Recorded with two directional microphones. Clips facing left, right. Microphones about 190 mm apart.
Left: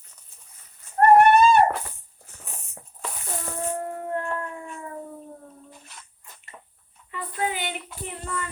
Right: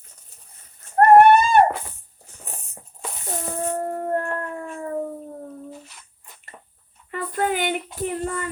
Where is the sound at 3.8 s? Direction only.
45° right (ahead or behind).